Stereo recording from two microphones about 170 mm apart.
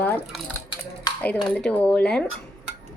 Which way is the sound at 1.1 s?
25° left (ahead or behind).